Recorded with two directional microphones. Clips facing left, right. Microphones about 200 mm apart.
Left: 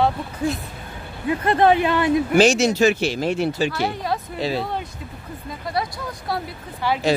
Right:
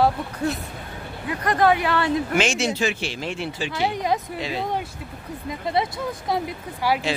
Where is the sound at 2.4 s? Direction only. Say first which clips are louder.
Left 7 dB; 40° left (ahead or behind).